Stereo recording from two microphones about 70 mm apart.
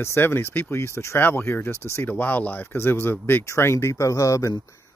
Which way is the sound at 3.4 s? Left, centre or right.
Left.